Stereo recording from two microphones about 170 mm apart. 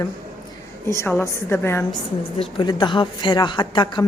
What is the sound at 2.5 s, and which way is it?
A woman's voice, 25° left (ahead or behind).